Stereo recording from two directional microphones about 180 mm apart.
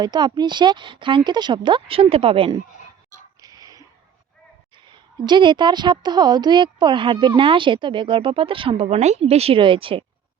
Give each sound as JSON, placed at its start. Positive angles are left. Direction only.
{"t": 0.0, "sound": "a woman's voice", "side_deg": -25}
{"t": 3.4, "sound": "a sound", "side_deg": -20}
{"t": 4.9, "sound": "a woman's voice", "side_deg": -25}